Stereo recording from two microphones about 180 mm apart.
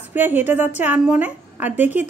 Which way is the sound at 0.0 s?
10° right (ahead or behind).